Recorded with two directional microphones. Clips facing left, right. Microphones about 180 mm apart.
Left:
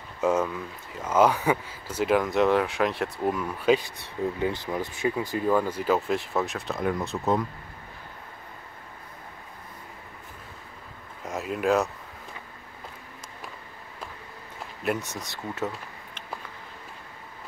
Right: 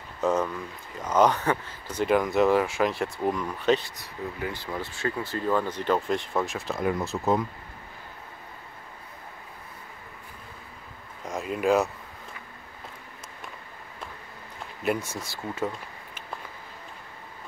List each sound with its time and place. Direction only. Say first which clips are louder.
0.2 s speech: left 1 dB; 10° left (ahead or behind)
4.0 s speech: left 6 dB; 25° left (ahead or behind); by 7.4 s centre (ahead or behind)
11.2 s speech: right 1 dB; centre (ahead or behind)
15.3 s speech: right 1 dB; 5° left (ahead or behind)